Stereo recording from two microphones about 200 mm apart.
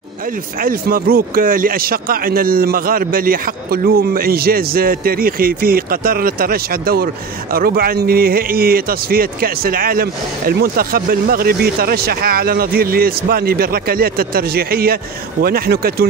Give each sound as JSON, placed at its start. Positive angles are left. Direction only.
{"t": 0.6, "sound": "a man's voice", "side_deg": -45}